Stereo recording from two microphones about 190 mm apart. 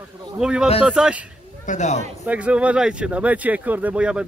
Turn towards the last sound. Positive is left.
turn(degrees=-5)  # may be behind; listen again after turning